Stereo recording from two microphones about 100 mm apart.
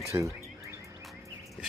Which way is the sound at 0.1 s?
30° right (ahead or behind).